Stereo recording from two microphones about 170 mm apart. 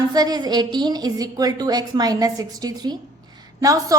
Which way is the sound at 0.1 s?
25° right (ahead or behind).